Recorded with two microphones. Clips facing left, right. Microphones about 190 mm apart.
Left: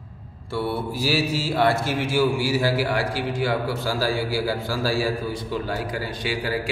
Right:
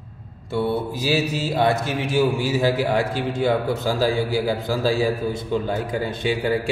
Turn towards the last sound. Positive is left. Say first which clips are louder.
# right 5 dB
turn(degrees=-25)  # may be behind; listen again after turning